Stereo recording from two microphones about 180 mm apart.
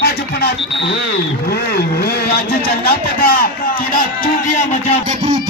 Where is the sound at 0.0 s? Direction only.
60° left (ahead or behind).